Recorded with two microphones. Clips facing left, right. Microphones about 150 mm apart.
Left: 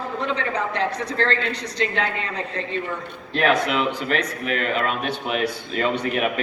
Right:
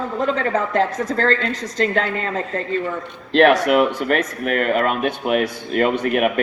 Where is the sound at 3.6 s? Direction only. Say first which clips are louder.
Right 7 dB; 55° right (ahead or behind).